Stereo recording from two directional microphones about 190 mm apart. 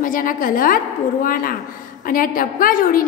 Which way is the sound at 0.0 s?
45° left (ahead or behind).